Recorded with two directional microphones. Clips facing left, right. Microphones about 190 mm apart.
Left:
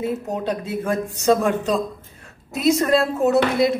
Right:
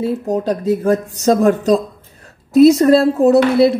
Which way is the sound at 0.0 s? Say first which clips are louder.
Right 6 dB; 35° right (ahead or behind).